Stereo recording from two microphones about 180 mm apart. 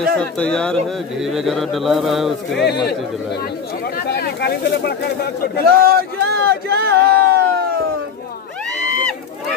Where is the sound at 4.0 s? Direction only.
60° left (ahead or behind).